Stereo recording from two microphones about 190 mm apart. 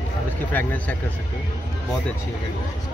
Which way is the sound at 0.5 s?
10° left (ahead or behind).